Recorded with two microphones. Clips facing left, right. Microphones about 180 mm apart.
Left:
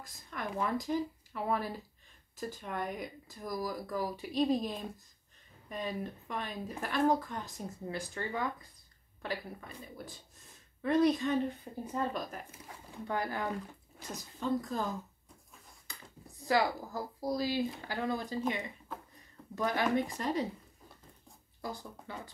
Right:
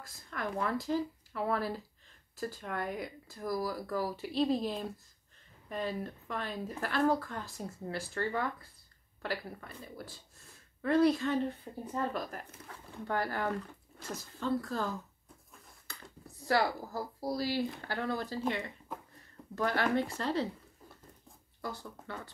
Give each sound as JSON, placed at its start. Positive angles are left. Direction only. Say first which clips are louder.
{"t": 0.0, "sound": "a woman's voice", "louder": "right 2 dB", "side_deg": 15}
{"t": 16.4, "sound": "speech", "louder": "even", "side_deg": 15}
{"t": 19.5, "sound": "speech", "louder": "even", "side_deg": 15}
{"t": 21.5, "sound": "speech", "louder": "even", "side_deg": 15}